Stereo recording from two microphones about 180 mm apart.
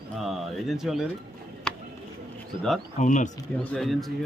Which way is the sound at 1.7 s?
5° left (ahead or behind).